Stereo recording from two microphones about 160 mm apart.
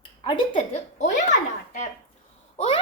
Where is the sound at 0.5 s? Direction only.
50° left (ahead or behind).